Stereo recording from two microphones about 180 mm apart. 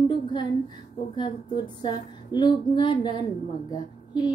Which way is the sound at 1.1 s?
25° left (ahead or behind).